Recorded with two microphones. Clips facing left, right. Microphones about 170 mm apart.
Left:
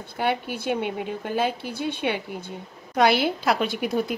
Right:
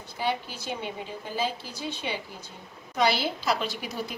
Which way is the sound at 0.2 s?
60° left (ahead or behind).